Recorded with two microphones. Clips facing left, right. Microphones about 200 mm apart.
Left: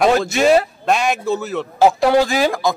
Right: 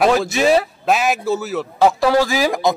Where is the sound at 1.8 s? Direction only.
25° left (ahead or behind).